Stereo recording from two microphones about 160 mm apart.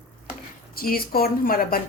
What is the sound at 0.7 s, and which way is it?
A woman's voice, 70° left (ahead or behind).